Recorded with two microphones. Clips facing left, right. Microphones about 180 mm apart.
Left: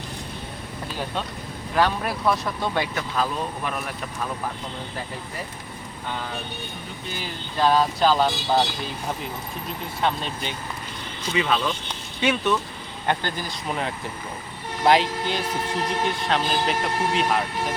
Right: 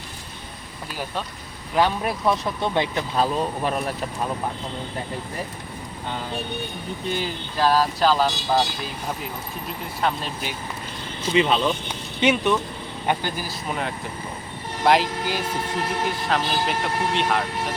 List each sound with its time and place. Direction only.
1.7 s speech: 15° right (ahead or behind); by 4.3 s 35° right (ahead or behind)
7.6 s speech: centre (ahead or behind)
10.0 s speech: centre (ahead or behind)
11.3 s speech: 25° right (ahead or behind); by 17.4 s centre (ahead or behind)